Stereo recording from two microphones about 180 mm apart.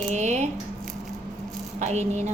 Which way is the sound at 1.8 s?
40° right (ahead or behind).